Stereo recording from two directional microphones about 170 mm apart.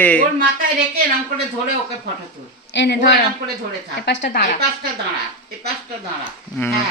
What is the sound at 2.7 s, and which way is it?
A woman's voice, 85° left.